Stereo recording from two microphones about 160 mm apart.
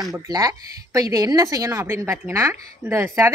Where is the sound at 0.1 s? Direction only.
25° right (ahead or behind).